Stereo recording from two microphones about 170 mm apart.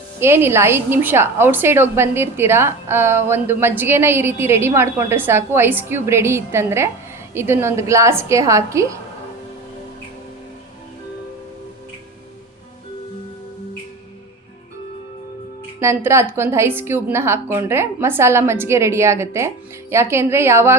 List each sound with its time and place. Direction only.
0.2 s a woman's voice: 15° right (ahead or behind)
15.8 s a woman's voice: 15° right (ahead or behind)